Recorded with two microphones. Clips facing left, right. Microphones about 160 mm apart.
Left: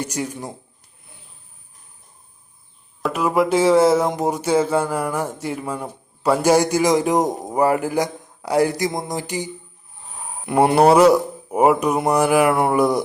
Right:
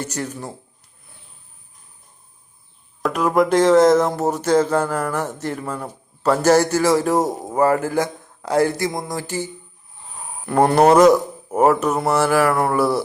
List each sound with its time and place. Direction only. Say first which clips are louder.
0.0 s speech: left 1 dB; 10° left (ahead or behind)
3.0 s speech: right 1 dB; 5° left (ahead or behind)